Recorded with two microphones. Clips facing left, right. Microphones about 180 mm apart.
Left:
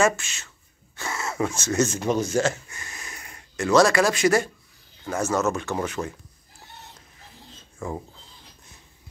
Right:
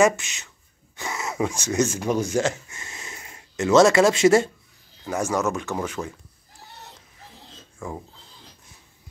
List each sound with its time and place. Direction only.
0.0 s speech: 20° right (ahead or behind)
5.0 s speech: 15° right (ahead or behind)
5.7 s speech: 5° left (ahead or behind)